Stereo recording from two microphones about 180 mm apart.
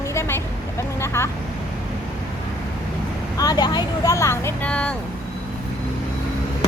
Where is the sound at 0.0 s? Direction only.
15° left (ahead or behind).